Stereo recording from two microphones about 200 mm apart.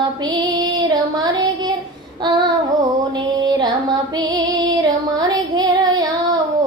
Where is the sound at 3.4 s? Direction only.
20° right (ahead or behind).